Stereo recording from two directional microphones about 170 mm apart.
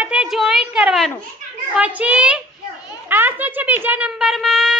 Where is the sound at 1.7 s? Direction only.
10° right (ahead or behind).